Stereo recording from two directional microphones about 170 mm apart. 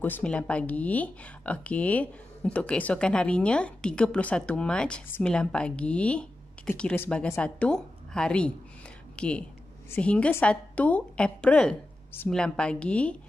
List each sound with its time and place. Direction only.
0.0 s speech: 10° left (ahead or behind)